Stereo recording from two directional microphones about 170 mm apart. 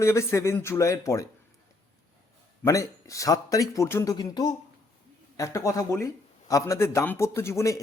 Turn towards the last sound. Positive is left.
turn(degrees=15)  # may be behind; listen again after turning